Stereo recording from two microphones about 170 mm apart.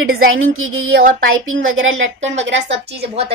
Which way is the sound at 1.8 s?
90° right.